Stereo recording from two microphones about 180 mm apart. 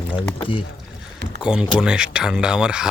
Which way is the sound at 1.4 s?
5° right (ahead or behind).